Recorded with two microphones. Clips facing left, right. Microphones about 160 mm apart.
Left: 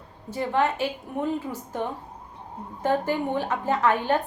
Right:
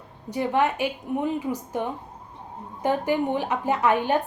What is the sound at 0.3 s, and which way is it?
A woman's voice, 15° right (ahead or behind).